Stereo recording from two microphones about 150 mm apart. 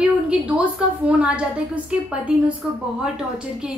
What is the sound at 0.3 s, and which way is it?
A woman's voice, 5° right (ahead or behind).